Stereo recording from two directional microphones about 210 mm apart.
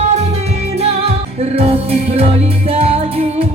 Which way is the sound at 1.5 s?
30° right (ahead or behind).